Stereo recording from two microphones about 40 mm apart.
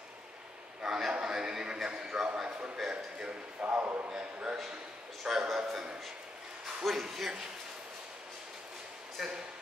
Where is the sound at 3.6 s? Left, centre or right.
Right.